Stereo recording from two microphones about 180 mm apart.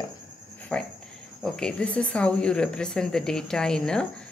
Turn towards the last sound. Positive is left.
turn(degrees=5)  # may be behind; listen again after turning